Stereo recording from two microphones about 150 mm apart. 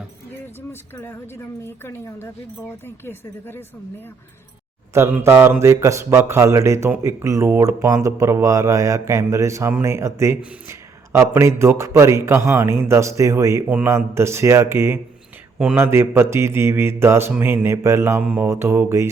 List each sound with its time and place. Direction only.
0.7 s a woman's voice: 15° left (ahead or behind)
4.9 s a man's voice: 15° right (ahead or behind)
13.7 s mantra: 15° right (ahead or behind)